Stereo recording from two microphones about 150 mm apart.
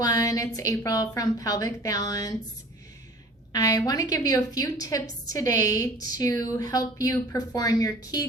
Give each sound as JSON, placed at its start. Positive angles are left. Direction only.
{"t": 0.0, "sound": "a woman's voice", "side_deg": 25}
{"t": 3.5, "sound": "a woman's voice", "side_deg": 25}